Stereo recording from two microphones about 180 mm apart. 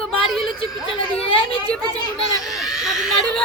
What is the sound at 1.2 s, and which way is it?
Speech, 30° left (ahead or behind).